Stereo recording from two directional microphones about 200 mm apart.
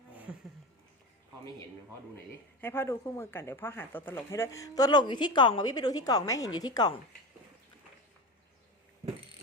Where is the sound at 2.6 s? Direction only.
10° left (ahead or behind).